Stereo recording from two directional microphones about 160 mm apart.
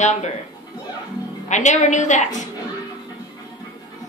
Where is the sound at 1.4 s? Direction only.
50° left (ahead or behind).